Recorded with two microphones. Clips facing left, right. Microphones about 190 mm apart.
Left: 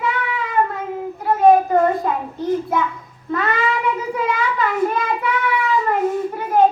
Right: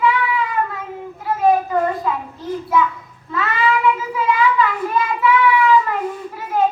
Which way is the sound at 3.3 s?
45° left (ahead or behind).